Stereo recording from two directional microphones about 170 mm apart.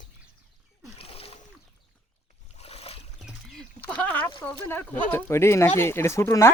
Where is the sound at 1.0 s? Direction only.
35° left (ahead or behind).